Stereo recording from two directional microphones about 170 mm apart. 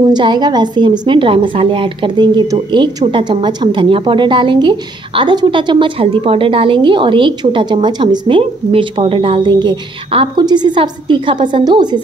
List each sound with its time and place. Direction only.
0.0 s a woman's voice: 25° right (ahead or behind)